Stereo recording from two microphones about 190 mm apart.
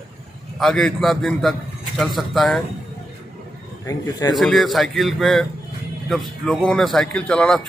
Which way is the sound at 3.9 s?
20° left (ahead or behind).